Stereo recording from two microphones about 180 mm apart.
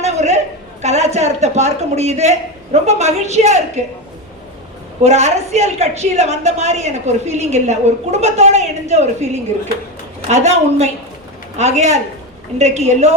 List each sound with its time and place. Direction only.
0.0 s a sound: 40° right (ahead or behind)
0.8 s a woman's voice: 40° right (ahead or behind)
5.0 s a woman's voice: 40° right (ahead or behind)